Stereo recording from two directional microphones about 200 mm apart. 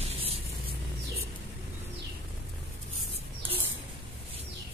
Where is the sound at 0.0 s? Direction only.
30° right (ahead or behind).